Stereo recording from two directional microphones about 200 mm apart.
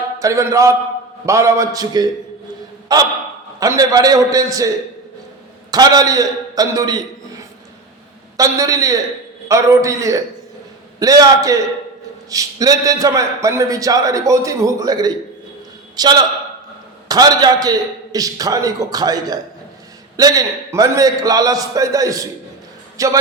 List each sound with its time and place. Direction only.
0.2 s a man's voice: 15° right (ahead or behind)
5.7 s a man's voice: 20° right (ahead or behind)